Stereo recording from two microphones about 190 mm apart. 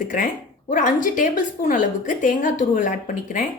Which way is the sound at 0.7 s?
45° left (ahead or behind).